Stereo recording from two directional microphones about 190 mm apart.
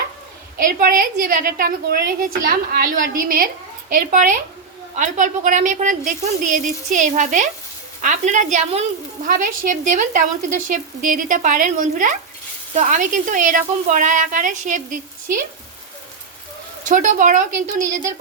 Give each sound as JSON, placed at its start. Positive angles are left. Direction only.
{"t": 0.6, "sound": "a woman's voice", "side_deg": -50}
{"t": 16.9, "sound": "a woman's voice", "side_deg": -45}